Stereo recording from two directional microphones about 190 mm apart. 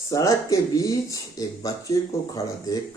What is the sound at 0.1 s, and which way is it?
Speech, 15° left (ahead or behind).